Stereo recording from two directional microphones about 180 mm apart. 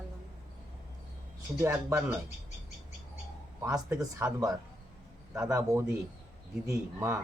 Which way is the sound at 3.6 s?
20° right (ahead or behind).